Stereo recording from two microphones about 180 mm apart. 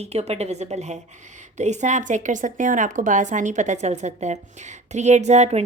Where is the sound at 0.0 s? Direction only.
35° right (ahead or behind).